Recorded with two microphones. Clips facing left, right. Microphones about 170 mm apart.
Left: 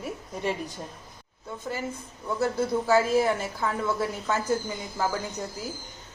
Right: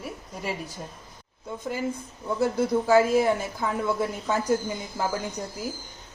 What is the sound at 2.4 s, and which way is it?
A woman's voice, 15° right (ahead or behind).